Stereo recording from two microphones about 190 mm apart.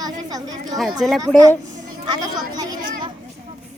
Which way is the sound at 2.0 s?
20° right (ahead or behind).